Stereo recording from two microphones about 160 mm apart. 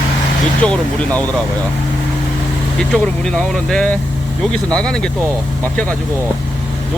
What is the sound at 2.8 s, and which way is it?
A man's voice, 5° left (ahead or behind).